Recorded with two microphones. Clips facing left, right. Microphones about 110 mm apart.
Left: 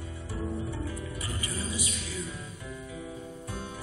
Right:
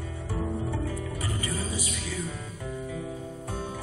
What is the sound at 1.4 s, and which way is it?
Music, 40° right (ahead or behind).